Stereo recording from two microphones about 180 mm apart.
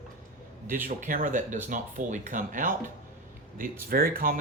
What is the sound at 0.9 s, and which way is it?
Speech, 50° right (ahead or behind).